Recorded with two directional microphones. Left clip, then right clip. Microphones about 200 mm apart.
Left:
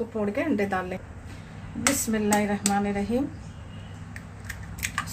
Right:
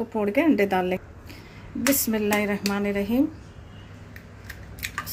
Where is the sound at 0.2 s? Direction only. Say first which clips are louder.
Right 6 dB; 40° right (ahead or behind).